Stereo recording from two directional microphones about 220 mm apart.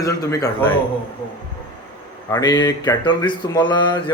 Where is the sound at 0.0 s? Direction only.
15° left (ahead or behind).